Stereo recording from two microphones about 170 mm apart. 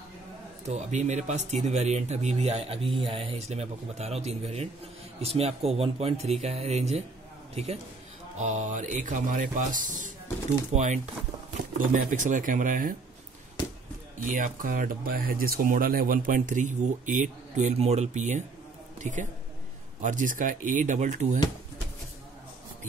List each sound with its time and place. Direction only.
0.7 s speech: 45° right (ahead or behind)
14.2 s a man's voice: 50° right (ahead or behind)